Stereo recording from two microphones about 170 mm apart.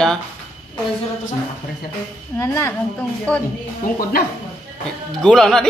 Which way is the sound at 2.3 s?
15° left (ahead or behind).